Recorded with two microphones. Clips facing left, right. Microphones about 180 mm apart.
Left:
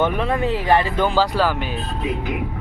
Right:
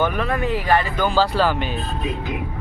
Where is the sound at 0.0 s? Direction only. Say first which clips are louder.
Left 2 dB; 25° left (ahead or behind).